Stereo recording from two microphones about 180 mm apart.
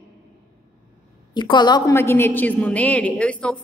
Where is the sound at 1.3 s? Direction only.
25° left (ahead or behind).